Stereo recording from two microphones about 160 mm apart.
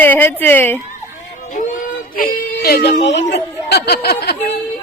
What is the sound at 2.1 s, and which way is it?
Baby cry, 65° left (ahead or behind).